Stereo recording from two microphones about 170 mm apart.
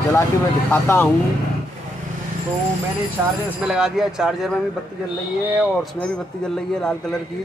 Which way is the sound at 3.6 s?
5° right (ahead or behind).